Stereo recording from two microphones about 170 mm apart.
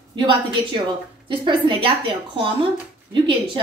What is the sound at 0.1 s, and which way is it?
A woman's voice, 30° right (ahead or behind).